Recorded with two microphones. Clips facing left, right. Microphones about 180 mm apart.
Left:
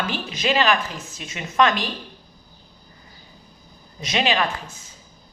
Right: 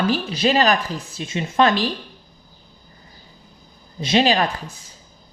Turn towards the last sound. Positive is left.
turn(degrees=-35)  # may be behind; listen again after turning